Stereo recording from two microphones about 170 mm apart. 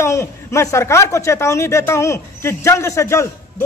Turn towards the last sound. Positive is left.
turn(degrees=15)  # may be behind; listen again after turning